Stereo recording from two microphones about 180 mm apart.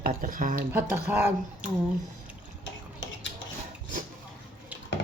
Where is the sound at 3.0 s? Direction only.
90° left.